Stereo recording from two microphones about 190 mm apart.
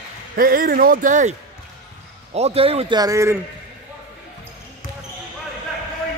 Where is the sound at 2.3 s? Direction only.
30° right (ahead or behind).